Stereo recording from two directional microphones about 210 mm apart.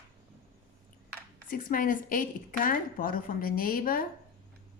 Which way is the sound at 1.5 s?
40° left (ahead or behind).